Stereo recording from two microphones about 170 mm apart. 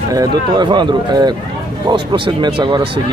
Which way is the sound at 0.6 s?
25° right (ahead or behind).